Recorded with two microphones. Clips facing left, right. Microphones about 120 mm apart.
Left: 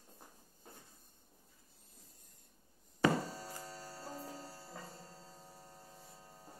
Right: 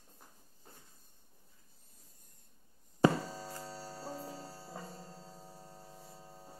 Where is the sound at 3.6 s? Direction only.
30° right (ahead or behind).